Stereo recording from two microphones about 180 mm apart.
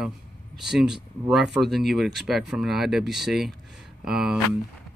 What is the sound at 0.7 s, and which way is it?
Speech, centre (ahead or behind).